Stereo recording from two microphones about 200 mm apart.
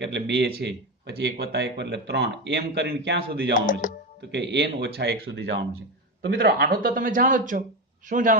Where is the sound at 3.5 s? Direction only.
40° left (ahead or behind).